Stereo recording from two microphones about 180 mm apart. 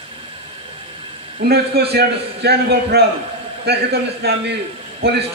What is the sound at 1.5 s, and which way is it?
A man's voice, 65° right (ahead or behind).